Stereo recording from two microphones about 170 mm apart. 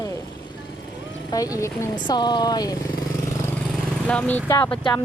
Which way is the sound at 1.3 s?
20° left (ahead or behind).